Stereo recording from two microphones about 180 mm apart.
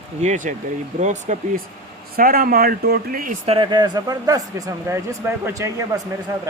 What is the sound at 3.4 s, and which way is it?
Speech, 30° right (ahead or behind).